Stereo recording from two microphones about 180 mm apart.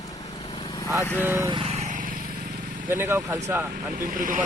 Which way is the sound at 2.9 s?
10° right (ahead or behind).